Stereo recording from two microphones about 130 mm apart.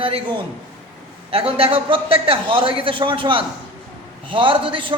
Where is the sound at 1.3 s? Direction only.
45° right (ahead or behind).